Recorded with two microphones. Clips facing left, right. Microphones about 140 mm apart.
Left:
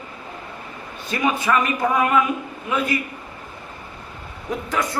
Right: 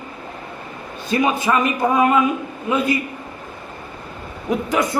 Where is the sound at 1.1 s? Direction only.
25° right (ahead or behind).